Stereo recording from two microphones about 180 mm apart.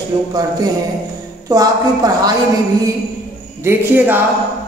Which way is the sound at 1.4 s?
20° right (ahead or behind).